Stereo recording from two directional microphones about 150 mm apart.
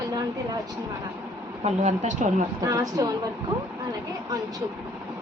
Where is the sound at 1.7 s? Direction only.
50° right (ahead or behind).